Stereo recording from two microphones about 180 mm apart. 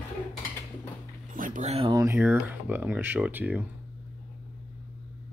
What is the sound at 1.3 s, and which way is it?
Speech, 45° right (ahead or behind).